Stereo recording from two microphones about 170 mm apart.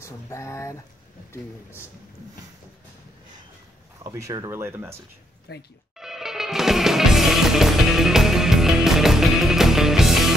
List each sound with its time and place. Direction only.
0.0 s speech: 15° left (ahead or behind)
4.0 s speech: 20° right (ahead or behind)
5.5 s speech: 75° left (ahead or behind)
5.9 s music: centre (ahead or behind)